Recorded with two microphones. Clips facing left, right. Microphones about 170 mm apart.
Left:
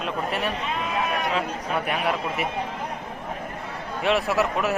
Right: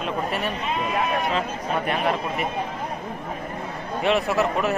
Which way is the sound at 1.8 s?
5° left (ahead or behind).